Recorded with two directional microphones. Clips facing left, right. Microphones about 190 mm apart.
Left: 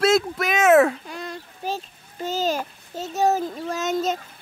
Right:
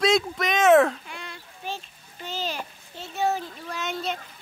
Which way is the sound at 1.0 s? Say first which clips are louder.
Left 7 dB; 40° left (ahead or behind).